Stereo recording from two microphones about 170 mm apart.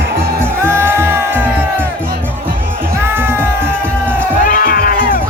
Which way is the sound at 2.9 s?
15° right (ahead or behind).